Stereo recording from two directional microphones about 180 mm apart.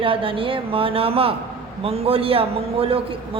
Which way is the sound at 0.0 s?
30° right (ahead or behind).